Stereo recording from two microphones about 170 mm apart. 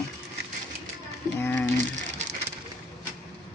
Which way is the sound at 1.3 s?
10° left (ahead or behind).